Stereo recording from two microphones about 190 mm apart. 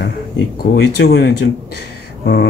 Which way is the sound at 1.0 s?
60° left (ahead or behind).